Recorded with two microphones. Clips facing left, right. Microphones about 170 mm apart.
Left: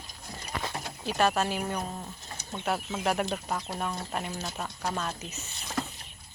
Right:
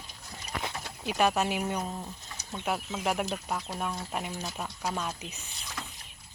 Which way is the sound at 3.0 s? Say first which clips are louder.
Left 2 dB; 5° right (ahead or behind).